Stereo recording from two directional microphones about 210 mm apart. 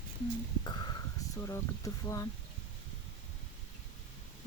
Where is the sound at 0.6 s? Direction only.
20° left (ahead or behind).